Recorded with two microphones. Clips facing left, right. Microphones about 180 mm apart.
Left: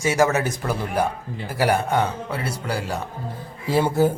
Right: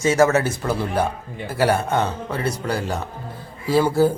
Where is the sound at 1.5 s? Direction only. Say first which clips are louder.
Right 1 dB; 15° left (ahead or behind).